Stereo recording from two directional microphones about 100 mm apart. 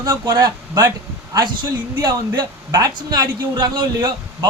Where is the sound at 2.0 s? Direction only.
45° right (ahead or behind).